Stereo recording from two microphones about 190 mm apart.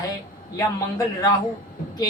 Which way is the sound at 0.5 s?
20° left (ahead or behind).